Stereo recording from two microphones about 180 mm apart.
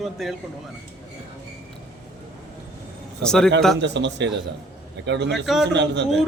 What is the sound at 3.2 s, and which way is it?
Speech, 5° left (ahead or behind).